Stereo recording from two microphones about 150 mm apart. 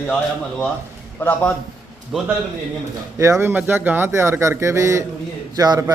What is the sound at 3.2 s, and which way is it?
A man's voice, 20° right (ahead or behind).